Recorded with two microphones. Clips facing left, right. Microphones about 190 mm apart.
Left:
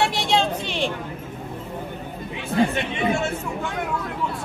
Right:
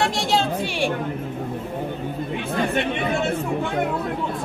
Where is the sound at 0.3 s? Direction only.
5° right (ahead or behind).